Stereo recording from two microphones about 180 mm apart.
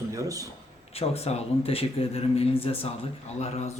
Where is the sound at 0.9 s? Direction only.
35° left (ahead or behind).